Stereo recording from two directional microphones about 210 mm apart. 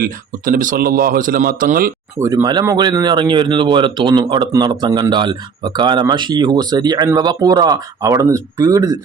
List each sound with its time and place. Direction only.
0.0 s a man's voice: 40° right (ahead or behind)
2.1 s speech: 15° right (ahead or behind)